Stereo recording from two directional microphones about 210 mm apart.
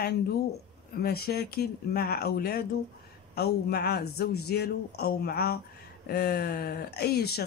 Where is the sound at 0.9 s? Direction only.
45° left (ahead or behind).